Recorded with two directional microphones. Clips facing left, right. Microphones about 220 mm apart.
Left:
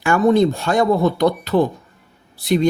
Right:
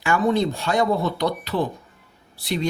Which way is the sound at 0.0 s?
50° left (ahead or behind).